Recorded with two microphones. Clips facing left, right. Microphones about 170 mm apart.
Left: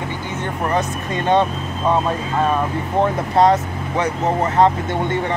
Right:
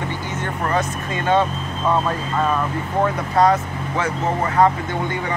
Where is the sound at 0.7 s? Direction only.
20° left (ahead or behind).